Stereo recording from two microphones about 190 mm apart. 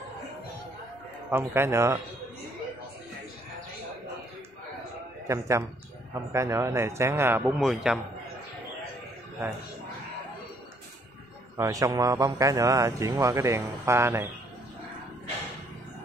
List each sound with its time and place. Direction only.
1.3 s a man's voice: 15° right (ahead or behind)
5.3 s a man's voice: 15° right (ahead or behind)
11.5 s a man's voice: 20° right (ahead or behind)